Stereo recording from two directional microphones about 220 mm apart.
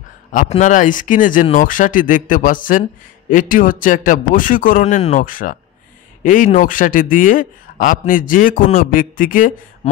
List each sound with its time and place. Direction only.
0.3 s speech: 35° left (ahead or behind)